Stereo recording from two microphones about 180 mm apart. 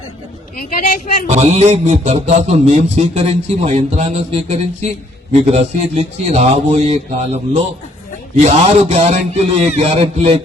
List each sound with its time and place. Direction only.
0.5 s a woman's voice: 50° left (ahead or behind)
1.3 s a man's voice: 40° right (ahead or behind)